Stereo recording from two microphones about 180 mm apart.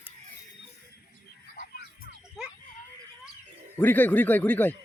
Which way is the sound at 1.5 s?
50° left (ahead or behind).